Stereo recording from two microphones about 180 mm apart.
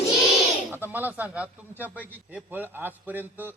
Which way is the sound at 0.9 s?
10° right (ahead or behind).